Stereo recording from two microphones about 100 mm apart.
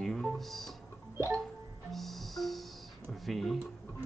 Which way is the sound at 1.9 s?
Centre (ahead or behind).